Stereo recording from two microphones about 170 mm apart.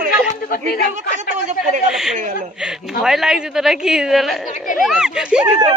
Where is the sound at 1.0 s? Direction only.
45° right (ahead or behind).